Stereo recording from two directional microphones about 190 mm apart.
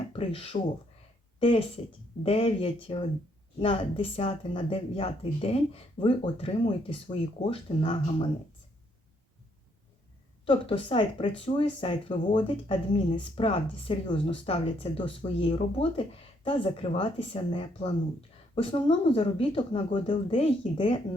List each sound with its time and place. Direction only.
0.1 s speech: 30° left (ahead or behind)
10.4 s speech: 25° left (ahead or behind)